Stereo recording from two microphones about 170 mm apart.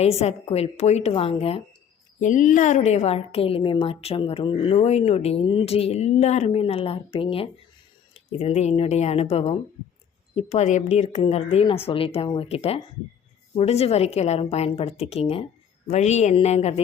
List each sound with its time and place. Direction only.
0.0 s a woman's voice: 40° left (ahead or behind)
2.2 s a woman's voice: 45° left (ahead or behind)